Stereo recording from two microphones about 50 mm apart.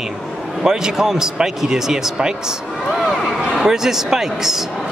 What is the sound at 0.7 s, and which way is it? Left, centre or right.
Speech, centre.